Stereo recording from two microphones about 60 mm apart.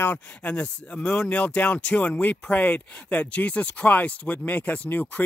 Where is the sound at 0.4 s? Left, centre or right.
Left.